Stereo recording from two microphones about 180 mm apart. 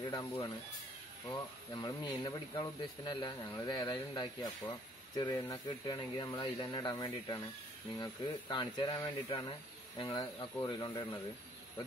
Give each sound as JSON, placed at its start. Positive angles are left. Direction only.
{"t": 0.0, "sound": "speech", "side_deg": 25}
{"t": 1.3, "sound": "speech", "side_deg": 20}